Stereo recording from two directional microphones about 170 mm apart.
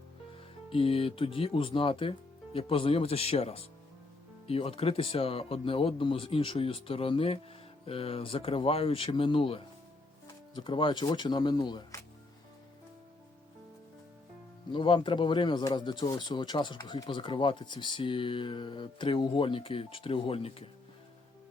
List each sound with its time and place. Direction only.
0.7 s speech: 30° left (ahead or behind)
14.7 s speech: 30° left (ahead or behind)